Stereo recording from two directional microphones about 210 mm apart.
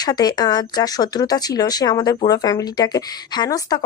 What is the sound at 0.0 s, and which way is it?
Speech, 20° left (ahead or behind).